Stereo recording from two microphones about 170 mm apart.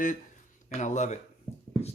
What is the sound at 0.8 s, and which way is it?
Speech, 45° left (ahead or behind).